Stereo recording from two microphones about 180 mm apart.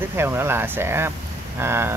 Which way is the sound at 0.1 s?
15° right (ahead or behind).